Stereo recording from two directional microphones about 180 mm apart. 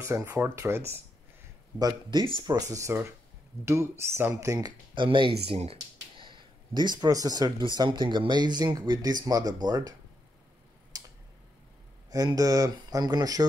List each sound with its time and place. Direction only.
0.0 s speech: 15° right (ahead or behind)
10.9 s tick-tock: 20° right (ahead or behind)
12.1 s speech: 20° right (ahead or behind)